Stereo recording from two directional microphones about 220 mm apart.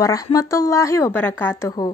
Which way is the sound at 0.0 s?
15° left (ahead or behind).